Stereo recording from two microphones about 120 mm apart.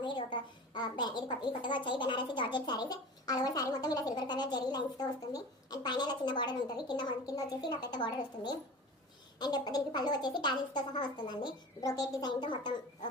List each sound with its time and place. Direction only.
0.0 s a woman's voice: 45° left (ahead or behind)